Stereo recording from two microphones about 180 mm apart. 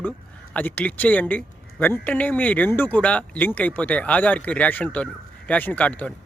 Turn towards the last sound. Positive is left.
turn(degrees=5)  # may be behind; listen again after turning